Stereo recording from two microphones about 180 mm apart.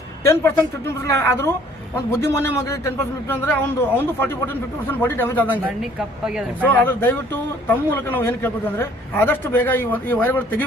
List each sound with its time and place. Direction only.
0.3 s a man's voice: 15° left (ahead or behind)
5.5 s a woman's voice: 5° right (ahead or behind)
6.6 s a man's voice: 10° left (ahead or behind)